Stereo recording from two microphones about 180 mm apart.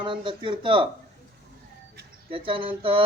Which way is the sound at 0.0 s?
25° right (ahead or behind).